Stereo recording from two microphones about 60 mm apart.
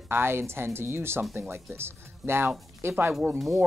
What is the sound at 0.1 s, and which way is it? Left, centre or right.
A woman's voice, right.